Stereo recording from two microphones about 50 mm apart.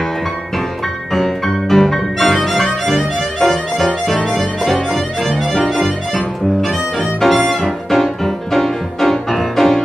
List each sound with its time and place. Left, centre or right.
1.1 s music: centre
5.5 s harmonica: centre